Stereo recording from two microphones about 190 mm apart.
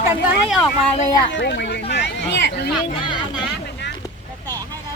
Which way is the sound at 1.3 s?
65° left (ahead or behind).